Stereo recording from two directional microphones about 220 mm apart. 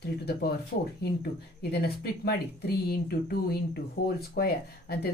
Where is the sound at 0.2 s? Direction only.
45° left (ahead or behind).